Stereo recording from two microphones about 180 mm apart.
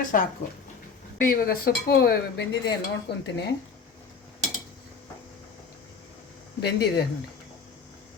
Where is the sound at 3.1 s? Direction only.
65° left (ahead or behind).